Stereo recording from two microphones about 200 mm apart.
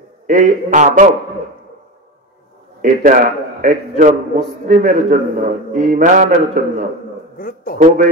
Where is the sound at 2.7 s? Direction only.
45° right (ahead or behind).